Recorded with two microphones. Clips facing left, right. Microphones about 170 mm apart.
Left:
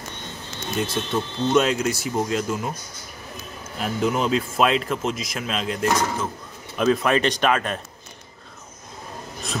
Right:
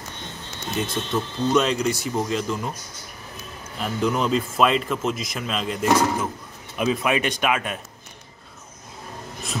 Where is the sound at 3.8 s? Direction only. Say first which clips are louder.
Even; centre (ahead or behind).